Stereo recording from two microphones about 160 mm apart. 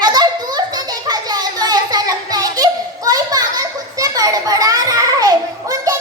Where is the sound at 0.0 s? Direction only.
25° right (ahead or behind).